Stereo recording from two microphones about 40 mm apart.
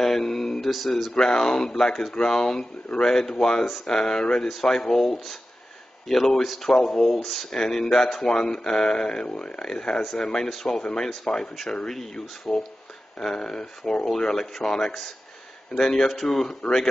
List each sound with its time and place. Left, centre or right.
0.0 s mantra: centre
0.8 s speech: centre
7.4 s speech: centre
16.1 s speech: centre